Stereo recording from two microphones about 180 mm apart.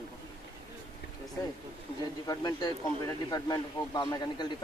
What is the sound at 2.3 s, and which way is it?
Speech, 25° left (ahead or behind).